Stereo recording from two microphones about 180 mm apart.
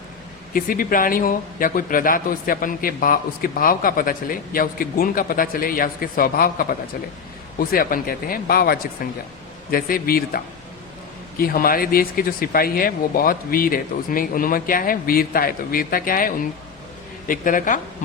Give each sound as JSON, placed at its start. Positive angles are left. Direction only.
{"t": 0.5, "sound": "speech", "side_deg": 50}